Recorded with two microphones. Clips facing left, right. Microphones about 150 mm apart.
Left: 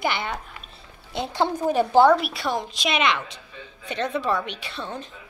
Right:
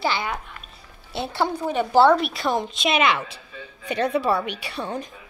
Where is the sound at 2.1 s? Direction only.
Centre (ahead or behind).